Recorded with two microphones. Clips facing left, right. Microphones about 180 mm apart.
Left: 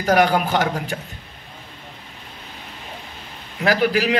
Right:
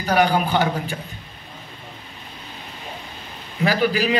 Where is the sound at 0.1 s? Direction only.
90° left.